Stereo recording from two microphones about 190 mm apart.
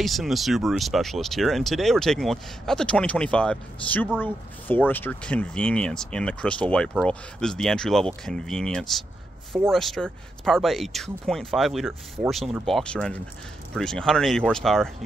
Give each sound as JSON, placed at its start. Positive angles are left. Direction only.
{"t": 0.0, "sound": "speech", "side_deg": 0}